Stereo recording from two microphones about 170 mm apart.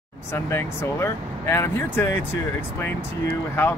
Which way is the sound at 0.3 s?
15° left (ahead or behind).